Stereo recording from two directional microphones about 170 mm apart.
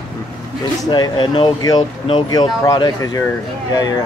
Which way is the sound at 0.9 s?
25° left (ahead or behind).